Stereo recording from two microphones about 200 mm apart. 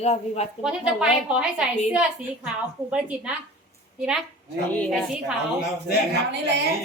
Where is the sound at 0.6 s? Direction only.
5° right (ahead or behind).